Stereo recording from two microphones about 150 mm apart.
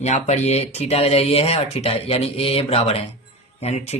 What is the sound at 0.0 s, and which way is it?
Speech, 45° left (ahead or behind).